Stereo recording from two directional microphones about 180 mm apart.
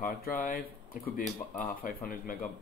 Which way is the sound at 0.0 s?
50° left (ahead or behind).